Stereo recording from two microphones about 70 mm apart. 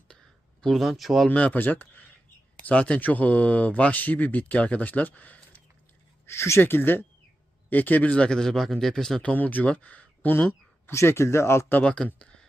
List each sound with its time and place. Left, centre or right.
0.6 s speech: centre
1.3 s speech: centre
6.2 s speech: left; by 9.3 s centre
9.3 s speech: left
10.9 s speech: left
11.8 s speech: centre
12.0 s a sound: centre